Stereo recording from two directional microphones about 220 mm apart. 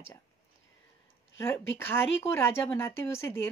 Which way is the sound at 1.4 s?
10° left (ahead or behind).